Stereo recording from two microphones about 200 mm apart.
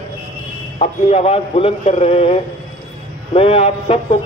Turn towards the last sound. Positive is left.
turn(degrees=30)  # may be behind; listen again after turning